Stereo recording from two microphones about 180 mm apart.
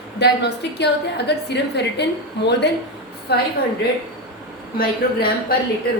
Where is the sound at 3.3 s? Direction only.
65° left (ahead or behind).